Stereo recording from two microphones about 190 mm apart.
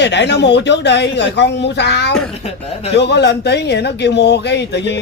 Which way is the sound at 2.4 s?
30° left (ahead or behind).